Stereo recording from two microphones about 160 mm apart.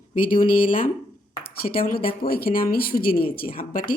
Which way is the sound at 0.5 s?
35° left (ahead or behind).